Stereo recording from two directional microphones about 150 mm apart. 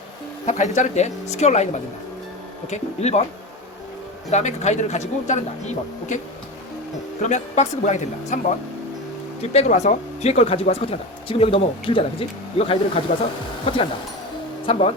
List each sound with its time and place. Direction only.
0.4 s speech: 50° left (ahead or behind)
4.3 s speech: 50° left (ahead or behind)
7.2 s speech: 50° left (ahead or behind)
9.5 s speech: 45° left (ahead or behind)